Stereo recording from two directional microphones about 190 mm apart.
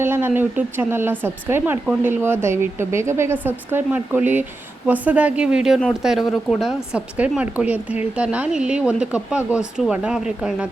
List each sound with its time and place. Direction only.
0.0 s a woman's voice: 10° right (ahead or behind)